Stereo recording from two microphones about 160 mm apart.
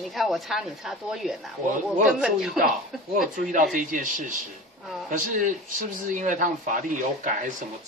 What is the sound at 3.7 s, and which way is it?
A man's voice, 55° right (ahead or behind).